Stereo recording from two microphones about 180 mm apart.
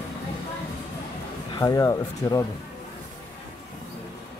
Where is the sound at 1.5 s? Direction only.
20° left (ahead or behind).